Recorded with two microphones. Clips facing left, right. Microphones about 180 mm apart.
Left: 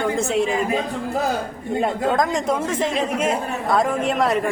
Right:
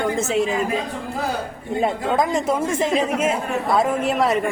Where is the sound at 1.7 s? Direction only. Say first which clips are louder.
Even; centre (ahead or behind).